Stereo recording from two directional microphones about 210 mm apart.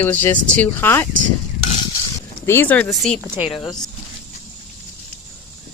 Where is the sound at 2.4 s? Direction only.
10° left (ahead or behind).